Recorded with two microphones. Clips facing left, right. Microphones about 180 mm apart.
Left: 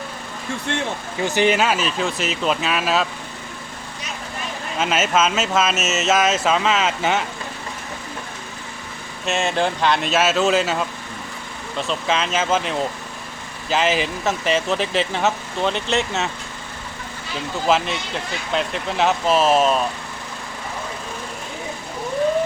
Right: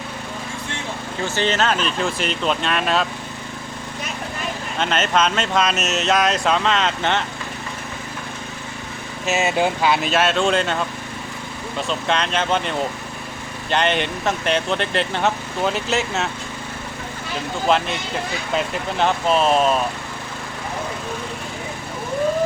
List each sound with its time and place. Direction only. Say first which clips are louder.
0.7 s speech: left 10 dB; 70° left (ahead or behind)
1.2 s speech: left 3 dB; 15° left (ahead or behind)
4.8 s speech: left 1 dB; 5° left (ahead or behind)
9.2 s speech: right 1 dB; 5° right (ahead or behind)
17.7 s speech: even; centre (ahead or behind)